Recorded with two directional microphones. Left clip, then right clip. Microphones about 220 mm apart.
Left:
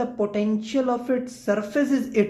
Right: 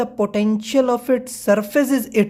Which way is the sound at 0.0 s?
45° right (ahead or behind).